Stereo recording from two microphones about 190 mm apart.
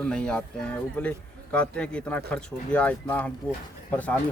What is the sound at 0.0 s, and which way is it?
Speech, 5° left (ahead or behind).